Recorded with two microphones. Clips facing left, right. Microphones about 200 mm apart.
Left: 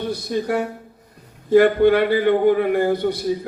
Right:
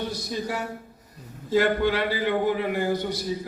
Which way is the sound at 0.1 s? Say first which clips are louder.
Left 8 dB; 60° left (ahead or behind).